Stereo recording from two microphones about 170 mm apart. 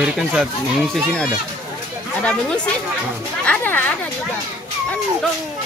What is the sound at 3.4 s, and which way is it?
Speech, 10° left (ahead or behind).